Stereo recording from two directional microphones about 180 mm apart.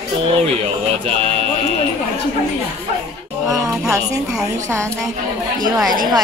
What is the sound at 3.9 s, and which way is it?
Speech, 5° right (ahead or behind).